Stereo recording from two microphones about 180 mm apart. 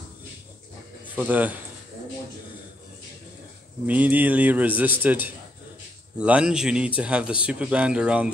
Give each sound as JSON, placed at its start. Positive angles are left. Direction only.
{"t": 1.1, "sound": "a man's voice", "side_deg": -10}
{"t": 3.8, "sound": "a man's voice", "side_deg": -10}